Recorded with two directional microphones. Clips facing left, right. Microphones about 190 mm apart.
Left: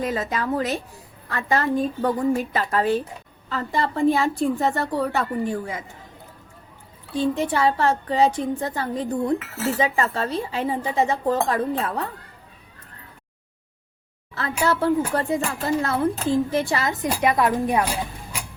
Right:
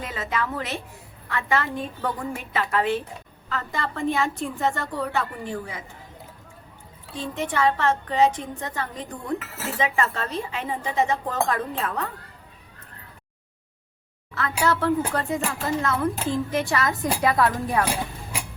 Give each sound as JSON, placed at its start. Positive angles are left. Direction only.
{"t": 0.0, "sound": "a woman's voice", "side_deg": 40}
{"t": 7.1, "sound": "a woman's voice", "side_deg": 30}
{"t": 14.3, "sound": "a woman's voice", "side_deg": 30}